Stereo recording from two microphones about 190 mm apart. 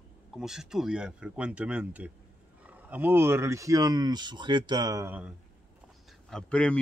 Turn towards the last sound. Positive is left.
turn(degrees=5)  # may be behind; listen again after turning